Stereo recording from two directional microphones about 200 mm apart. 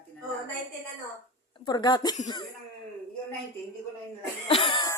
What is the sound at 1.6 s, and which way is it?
Speech, 20° left (ahead or behind).